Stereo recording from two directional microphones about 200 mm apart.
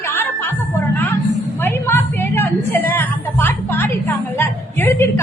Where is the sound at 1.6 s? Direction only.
10° left (ahead or behind).